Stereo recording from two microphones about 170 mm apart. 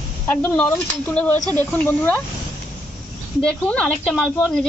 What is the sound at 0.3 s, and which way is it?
Speech, 10° left (ahead or behind).